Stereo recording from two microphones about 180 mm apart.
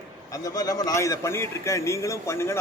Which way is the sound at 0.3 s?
20° left (ahead or behind).